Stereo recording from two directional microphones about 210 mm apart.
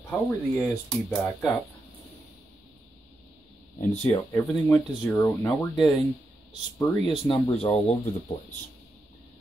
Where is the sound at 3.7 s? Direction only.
30° left (ahead or behind).